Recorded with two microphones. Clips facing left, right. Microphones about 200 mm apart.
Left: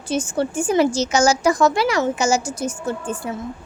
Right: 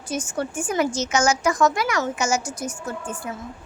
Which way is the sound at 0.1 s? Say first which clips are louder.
Left 5 dB; 30° left (ahead or behind).